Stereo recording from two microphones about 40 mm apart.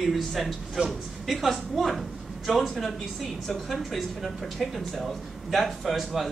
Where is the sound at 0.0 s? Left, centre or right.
Centre.